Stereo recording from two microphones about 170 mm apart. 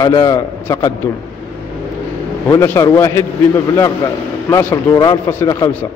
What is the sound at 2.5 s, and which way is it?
A man's voice, 15° left (ahead or behind).